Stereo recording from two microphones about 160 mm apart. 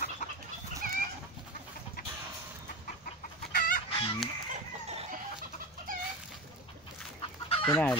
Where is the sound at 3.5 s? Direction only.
60° left (ahead or behind).